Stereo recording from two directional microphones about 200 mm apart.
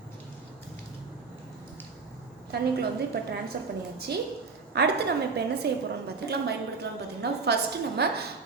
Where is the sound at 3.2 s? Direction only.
55° right (ahead or behind).